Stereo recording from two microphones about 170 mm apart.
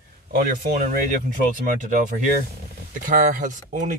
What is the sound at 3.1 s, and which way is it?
Speech, 50° right (ahead or behind).